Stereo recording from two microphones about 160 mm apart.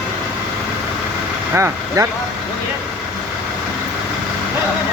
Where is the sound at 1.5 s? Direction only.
15° right (ahead or behind).